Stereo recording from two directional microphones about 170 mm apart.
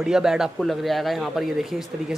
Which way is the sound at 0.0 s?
5° right (ahead or behind).